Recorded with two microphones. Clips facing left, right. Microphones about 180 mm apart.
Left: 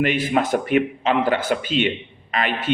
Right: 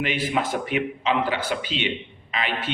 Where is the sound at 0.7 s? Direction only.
50° left (ahead or behind).